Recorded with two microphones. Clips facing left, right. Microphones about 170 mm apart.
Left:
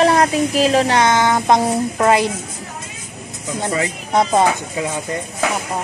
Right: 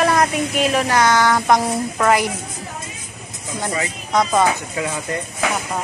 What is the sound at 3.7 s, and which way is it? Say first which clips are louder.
Speech: left 2 dB; 25° left (ahead or behind).